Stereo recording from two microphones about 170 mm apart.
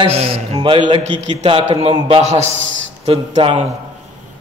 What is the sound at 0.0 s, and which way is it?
A man's voice, 35° right (ahead or behind).